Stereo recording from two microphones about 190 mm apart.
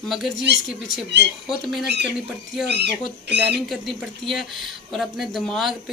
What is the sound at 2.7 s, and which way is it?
Speech, 60° right (ahead or behind).